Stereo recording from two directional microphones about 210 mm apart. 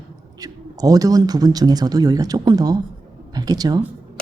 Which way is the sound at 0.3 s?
15° right (ahead or behind).